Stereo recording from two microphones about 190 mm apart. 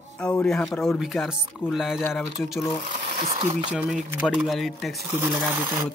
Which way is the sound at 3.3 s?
25° right (ahead or behind).